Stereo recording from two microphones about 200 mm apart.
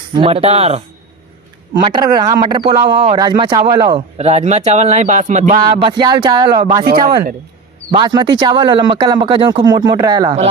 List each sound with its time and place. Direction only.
0.1 s speech: 25° right (ahead or behind)
1.8 s speech: 25° right (ahead or behind)
5.5 s speech: 25° right (ahead or behind)
6.8 s speech: 45° right (ahead or behind)
7.9 s speech: 20° right (ahead or behind)